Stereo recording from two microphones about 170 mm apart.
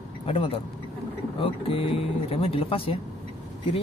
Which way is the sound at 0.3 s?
30° left (ahead or behind).